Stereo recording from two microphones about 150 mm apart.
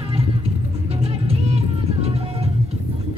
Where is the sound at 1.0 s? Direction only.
45° right (ahead or behind).